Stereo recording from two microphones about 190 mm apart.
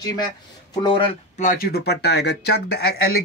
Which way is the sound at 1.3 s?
45° left (ahead or behind).